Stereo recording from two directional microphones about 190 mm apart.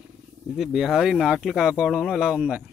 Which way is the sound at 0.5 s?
Centre (ahead or behind).